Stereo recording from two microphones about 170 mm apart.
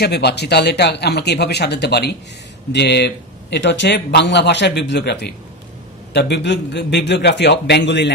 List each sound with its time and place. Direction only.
0.0 s a man's voice: 75° left (ahead or behind)